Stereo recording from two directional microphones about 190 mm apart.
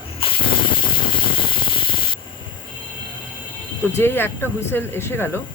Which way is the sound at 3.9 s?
10° left (ahead or behind).